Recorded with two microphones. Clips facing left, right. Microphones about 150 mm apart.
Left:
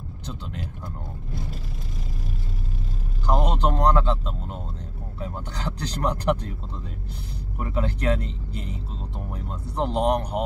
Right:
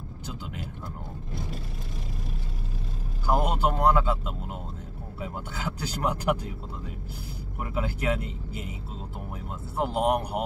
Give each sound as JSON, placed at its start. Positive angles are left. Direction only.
{"t": 0.3, "sound": "speech", "side_deg": -5}
{"t": 3.3, "sound": "speech", "side_deg": -10}
{"t": 7.5, "sound": "speech", "side_deg": -5}